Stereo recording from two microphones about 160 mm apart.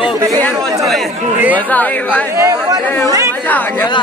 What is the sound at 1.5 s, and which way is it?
Speech, 10° left (ahead or behind).